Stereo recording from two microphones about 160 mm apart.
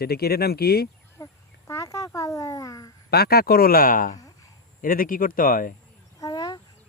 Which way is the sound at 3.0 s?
80° left.